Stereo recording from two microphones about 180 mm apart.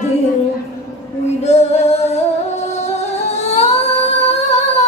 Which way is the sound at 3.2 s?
35° left (ahead or behind).